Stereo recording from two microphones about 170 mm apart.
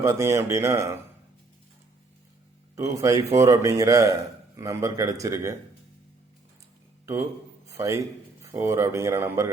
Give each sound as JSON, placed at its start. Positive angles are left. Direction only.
{"t": 0.0, "sound": "speech", "side_deg": -15}
{"t": 2.7, "sound": "a man's voice", "side_deg": -20}
{"t": 7.0, "sound": "a man's voice", "side_deg": -15}